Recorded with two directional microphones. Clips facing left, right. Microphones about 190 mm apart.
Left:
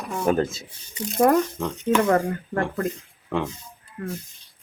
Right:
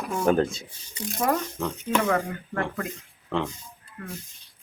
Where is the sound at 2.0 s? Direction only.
35° left (ahead or behind).